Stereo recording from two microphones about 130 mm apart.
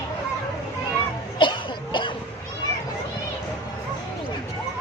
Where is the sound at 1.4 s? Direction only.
40° left (ahead or behind).